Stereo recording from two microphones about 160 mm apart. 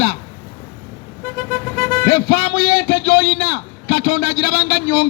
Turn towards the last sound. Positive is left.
turn(degrees=30)  # may be behind; listen again after turning